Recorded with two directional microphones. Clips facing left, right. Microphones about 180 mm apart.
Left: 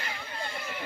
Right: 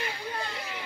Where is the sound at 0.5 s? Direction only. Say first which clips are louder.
Left 1 dB; 55° left (ahead or behind).